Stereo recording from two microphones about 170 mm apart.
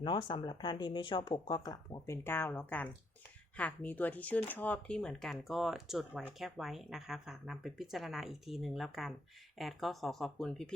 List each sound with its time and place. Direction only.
0.0 s speech: 30° left (ahead or behind); by 10.8 s 5° left (ahead or behind)